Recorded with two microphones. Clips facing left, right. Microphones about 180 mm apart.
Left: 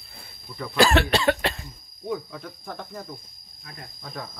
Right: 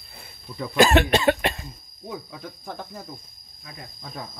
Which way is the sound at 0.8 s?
20° right (ahead or behind).